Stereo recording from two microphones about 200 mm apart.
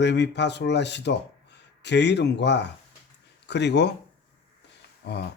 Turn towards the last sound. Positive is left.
turn(degrees=60)  # may be behind; listen again after turning